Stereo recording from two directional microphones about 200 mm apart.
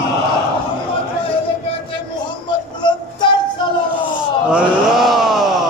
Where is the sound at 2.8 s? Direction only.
25° left (ahead or behind).